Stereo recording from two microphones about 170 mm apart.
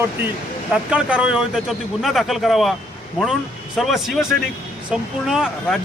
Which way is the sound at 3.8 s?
Centre (ahead or behind).